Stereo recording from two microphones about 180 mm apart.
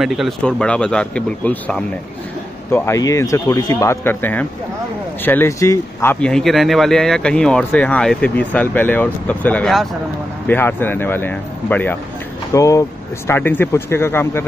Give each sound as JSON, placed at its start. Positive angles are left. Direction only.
{"t": 0.0, "sound": "speech", "side_deg": 0}